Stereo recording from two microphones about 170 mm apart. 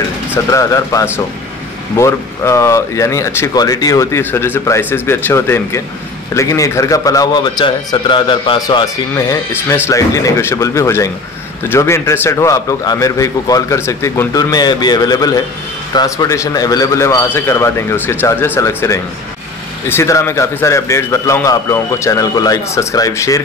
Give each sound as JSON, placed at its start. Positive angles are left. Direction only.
{"t": 0.3, "sound": "a man's voice", "side_deg": 20}